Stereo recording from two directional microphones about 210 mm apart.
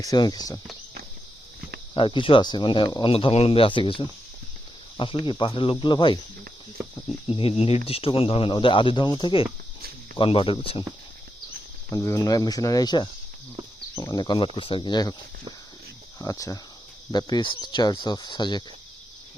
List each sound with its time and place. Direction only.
0.0 s speech: 20° left (ahead or behind)
1.9 s speech: 25° left (ahead or behind)
7.3 s speech: 25° left (ahead or behind)
11.9 s speech: 15° left (ahead or behind)
16.1 s speech: 15° left (ahead or behind)